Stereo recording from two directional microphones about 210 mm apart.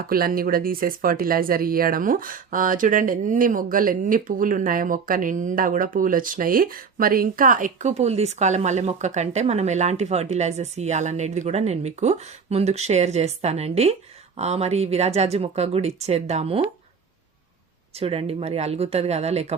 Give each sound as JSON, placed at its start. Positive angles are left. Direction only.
{"t": 0.0, "sound": "speech", "side_deg": -45}
{"t": 17.9, "sound": "speech", "side_deg": -30}